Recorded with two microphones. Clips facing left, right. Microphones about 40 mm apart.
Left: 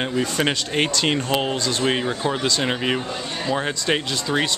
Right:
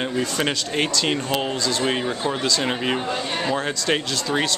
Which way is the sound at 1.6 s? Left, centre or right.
Left.